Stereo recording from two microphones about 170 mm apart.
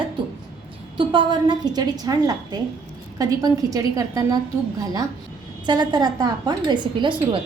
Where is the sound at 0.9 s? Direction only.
30° right (ahead or behind).